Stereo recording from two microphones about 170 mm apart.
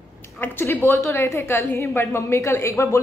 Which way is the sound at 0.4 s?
15° left (ahead or behind).